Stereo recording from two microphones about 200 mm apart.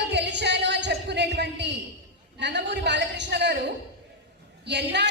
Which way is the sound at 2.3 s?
60° right (ahead or behind).